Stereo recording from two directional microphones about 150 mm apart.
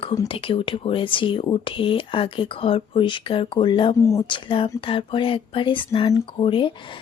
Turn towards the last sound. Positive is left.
turn(degrees=35)  # may be behind; listen again after turning